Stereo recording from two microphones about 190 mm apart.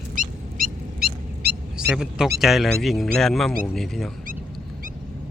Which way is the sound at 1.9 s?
5° right (ahead or behind).